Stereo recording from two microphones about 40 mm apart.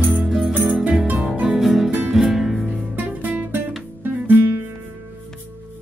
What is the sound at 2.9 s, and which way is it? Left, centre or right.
Music, right.